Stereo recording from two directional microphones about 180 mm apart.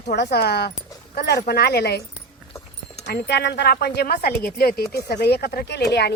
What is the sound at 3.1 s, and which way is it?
A woman's voice, 65° left (ahead or behind).